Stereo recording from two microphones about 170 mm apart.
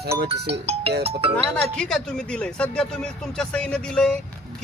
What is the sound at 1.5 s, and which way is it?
A man's voice, 5° left (ahead or behind).